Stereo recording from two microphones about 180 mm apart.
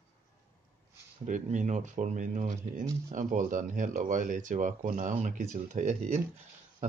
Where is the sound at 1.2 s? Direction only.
45° right (ahead or behind).